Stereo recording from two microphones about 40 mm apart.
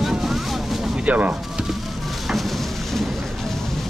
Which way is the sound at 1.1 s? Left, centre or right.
Right.